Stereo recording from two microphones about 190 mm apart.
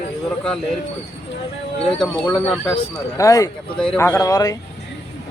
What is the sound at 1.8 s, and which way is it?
Speech, centre (ahead or behind).